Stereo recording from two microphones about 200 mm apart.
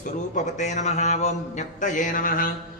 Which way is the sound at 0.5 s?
35° left (ahead or behind).